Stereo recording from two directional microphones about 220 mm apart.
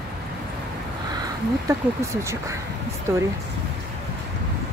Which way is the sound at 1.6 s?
15° right (ahead or behind).